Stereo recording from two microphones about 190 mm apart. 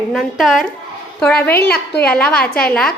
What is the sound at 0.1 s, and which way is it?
A woman's voice, centre (ahead or behind).